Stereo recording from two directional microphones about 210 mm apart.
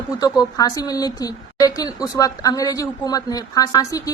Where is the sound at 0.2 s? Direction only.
15° left (ahead or behind).